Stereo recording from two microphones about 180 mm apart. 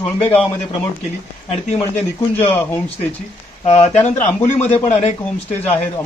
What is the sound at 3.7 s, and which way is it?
Speech, 35° left (ahead or behind).